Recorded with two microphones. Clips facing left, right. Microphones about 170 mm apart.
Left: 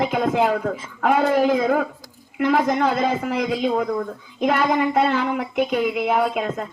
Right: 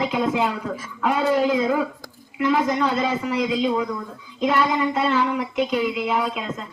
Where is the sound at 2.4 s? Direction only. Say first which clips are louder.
Left 2 dB; 55° left (ahead or behind).